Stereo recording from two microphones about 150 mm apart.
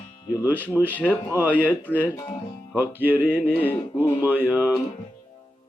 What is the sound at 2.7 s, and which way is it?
Speech, 10° right (ahead or behind).